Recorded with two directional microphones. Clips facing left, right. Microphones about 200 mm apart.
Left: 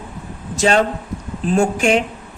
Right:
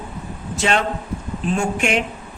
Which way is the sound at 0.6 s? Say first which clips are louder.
Left 5 dB; 40° left (ahead or behind).